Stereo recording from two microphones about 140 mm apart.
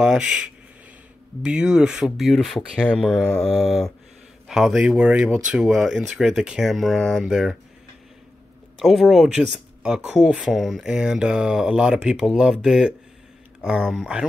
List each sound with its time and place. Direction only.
0.0 s speech: 5° right (ahead or behind)
8.8 s speech: centre (ahead or behind)